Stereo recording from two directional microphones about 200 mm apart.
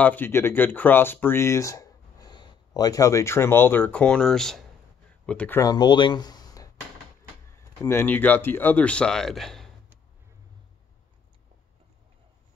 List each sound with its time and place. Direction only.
0.0 s speech: 10° left (ahead or behind)
5.6 s speech: 20° left (ahead or behind); by 9.7 s centre (ahead or behind)